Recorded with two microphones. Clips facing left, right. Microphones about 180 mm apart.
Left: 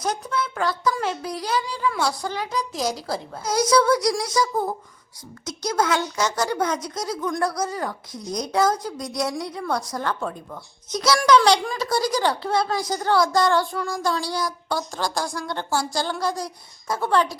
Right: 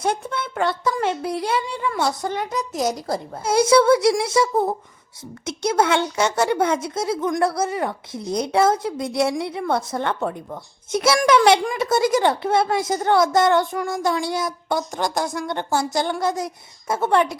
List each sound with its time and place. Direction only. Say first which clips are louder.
0.0 s speech: right 2 dB; 30° right (ahead or behind)